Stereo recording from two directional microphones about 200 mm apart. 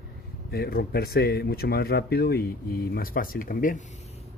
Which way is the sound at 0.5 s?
50° left (ahead or behind).